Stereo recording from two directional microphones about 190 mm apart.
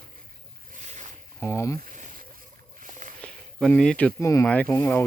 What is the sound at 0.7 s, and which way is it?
Boat, 40° right (ahead or behind).